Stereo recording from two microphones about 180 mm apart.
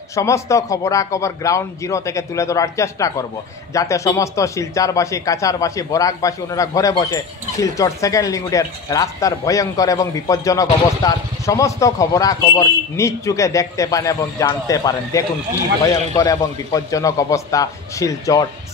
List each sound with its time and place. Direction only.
0.1 s a man's voice: 15° left (ahead or behind)